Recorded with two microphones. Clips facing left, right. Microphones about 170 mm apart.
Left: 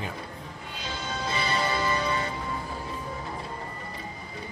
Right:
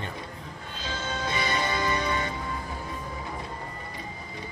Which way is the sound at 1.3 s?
20° right (ahead or behind).